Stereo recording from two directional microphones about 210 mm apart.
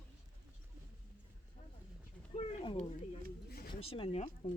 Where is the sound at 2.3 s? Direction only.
25° left (ahead or behind).